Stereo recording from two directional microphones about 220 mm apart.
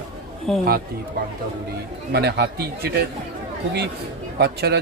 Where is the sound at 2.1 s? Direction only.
50° right (ahead or behind).